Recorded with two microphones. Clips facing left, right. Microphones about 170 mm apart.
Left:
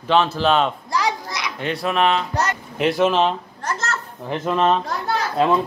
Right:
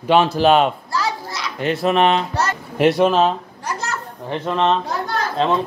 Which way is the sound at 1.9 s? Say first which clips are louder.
Right 3 dB; 35° right (ahead or behind).